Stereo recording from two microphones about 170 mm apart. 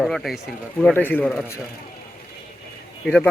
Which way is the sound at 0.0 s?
Centre (ahead or behind).